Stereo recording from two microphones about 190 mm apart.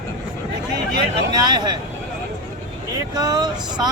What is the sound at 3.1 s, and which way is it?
Speech, 20° right (ahead or behind).